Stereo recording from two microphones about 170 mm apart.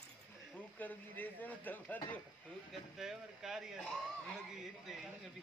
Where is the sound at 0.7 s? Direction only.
10° left (ahead or behind).